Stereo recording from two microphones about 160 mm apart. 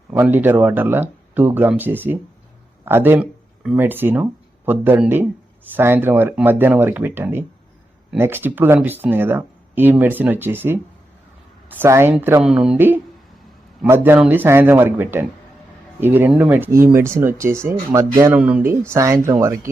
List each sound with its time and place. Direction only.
0.1 s speech: 10° right (ahead or behind)